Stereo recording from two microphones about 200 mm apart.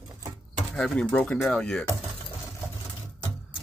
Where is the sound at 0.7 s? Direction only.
5° left (ahead or behind).